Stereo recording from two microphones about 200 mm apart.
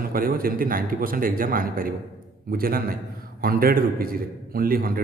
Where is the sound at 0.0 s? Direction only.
45° right (ahead or behind).